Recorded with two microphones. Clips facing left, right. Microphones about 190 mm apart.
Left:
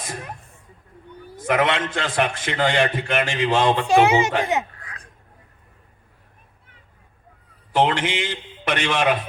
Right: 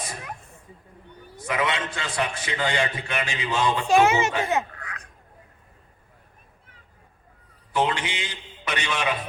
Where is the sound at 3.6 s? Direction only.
65° left (ahead or behind).